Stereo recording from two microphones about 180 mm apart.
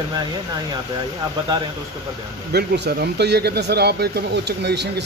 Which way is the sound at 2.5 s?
70° right (ahead or behind).